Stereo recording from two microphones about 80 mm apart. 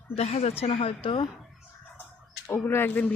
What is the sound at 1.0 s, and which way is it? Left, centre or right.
Speech, left.